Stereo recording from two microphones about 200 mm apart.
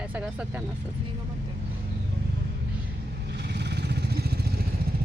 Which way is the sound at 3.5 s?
55° right (ahead or behind).